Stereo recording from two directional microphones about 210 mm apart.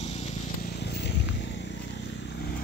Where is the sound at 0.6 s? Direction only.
50° left (ahead or behind).